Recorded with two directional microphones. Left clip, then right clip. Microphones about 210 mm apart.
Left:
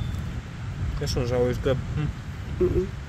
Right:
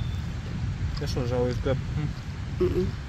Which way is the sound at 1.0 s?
15° left (ahead or behind).